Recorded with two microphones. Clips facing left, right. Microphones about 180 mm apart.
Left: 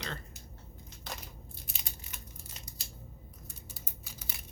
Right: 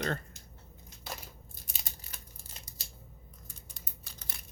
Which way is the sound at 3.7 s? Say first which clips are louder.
Left 3 dB; 5° left (ahead or behind).